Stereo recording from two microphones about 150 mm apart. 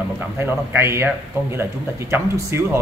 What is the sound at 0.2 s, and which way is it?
A man's voice, 15° right (ahead or behind).